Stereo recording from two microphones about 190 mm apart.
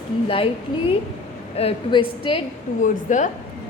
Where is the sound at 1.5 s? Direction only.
30° left (ahead or behind).